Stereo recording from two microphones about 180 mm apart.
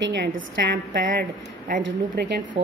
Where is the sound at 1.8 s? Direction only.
65° right (ahead or behind).